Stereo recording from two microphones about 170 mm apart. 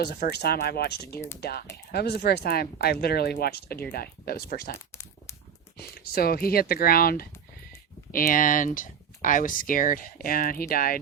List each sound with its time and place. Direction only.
0.0 s speech: 70° left (ahead or behind)